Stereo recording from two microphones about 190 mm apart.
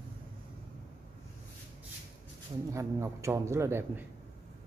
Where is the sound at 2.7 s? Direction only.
15° right (ahead or behind).